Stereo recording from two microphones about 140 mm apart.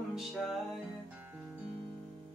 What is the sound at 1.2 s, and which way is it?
Guitar, 15° right (ahead or behind).